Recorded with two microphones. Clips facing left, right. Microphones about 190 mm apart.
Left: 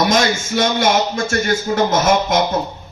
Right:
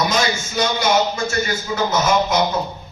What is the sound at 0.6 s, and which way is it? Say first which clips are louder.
A man's voice: left 1 dB; 50° left (ahead or behind).